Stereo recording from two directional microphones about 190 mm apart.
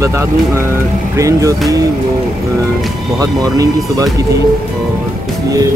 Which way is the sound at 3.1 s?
20° right (ahead or behind).